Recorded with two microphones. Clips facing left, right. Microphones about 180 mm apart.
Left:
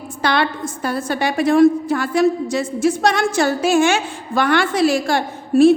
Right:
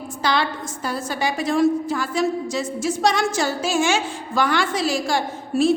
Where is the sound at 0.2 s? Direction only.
60° left (ahead or behind).